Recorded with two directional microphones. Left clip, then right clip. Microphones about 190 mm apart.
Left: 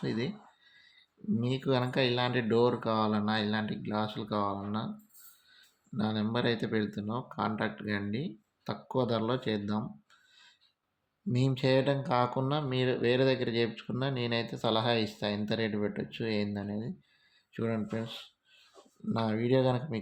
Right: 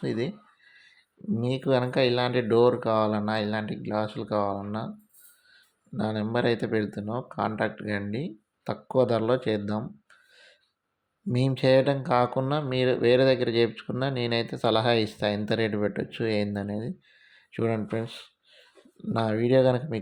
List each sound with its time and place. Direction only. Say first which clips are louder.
0.0 s speech: right 5 dB; 25° right (ahead or behind)
1.4 s speech: right 6 dB; 25° right (ahead or behind)
6.0 s speech: right 5 dB; 25° right (ahead or behind)
17.3 s a sound: right 6 dB; 30° right (ahead or behind)
19.0 s speech: right 6 dB; 30° right (ahead or behind)